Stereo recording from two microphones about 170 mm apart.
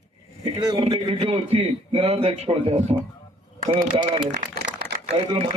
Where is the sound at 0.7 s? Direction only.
35° right (ahead or behind).